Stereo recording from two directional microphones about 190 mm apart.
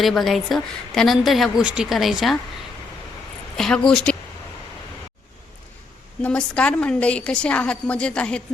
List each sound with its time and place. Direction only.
0.0 s a woman's voice: centre (ahead or behind)
3.6 s a woman's voice: 5° left (ahead or behind)
6.2 s a woman's voice: 5° left (ahead or behind)